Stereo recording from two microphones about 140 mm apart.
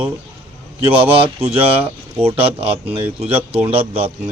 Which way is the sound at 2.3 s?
45° right (ahead or behind).